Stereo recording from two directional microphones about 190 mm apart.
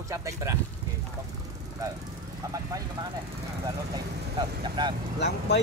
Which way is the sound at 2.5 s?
20° right (ahead or behind).